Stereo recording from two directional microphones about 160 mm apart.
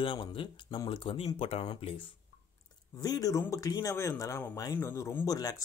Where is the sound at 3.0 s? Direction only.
25° left (ahead or behind).